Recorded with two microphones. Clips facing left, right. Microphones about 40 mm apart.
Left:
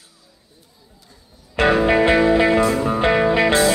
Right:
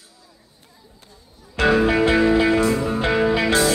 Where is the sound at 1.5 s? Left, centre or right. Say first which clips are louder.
Left 2 dB; left.